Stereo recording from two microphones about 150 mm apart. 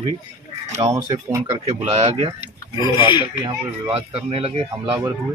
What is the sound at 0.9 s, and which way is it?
Speech, 30° right (ahead or behind).